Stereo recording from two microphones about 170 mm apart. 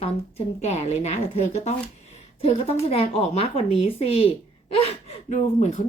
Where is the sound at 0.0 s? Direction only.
40° left (ahead or behind).